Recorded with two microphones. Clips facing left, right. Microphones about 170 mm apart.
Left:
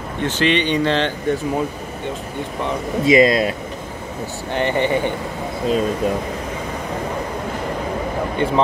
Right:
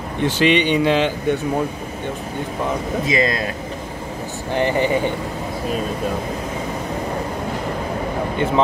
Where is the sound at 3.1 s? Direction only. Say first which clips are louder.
Left 9 dB; 25° left (ahead or behind).